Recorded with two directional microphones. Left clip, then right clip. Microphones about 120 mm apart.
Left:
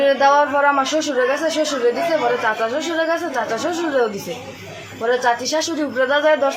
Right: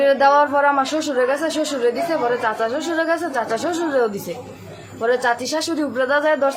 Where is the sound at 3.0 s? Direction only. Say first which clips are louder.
Even; 20° right (ahead or behind).